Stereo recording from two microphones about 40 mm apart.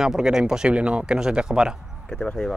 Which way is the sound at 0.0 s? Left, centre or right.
Centre.